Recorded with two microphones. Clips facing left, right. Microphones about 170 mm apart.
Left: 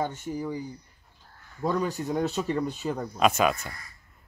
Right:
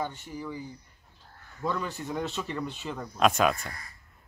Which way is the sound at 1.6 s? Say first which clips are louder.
Left 5 dB; 40° left (ahead or behind).